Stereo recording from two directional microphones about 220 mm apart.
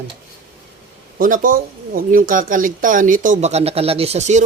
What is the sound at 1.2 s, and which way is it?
Speech, 40° right (ahead or behind).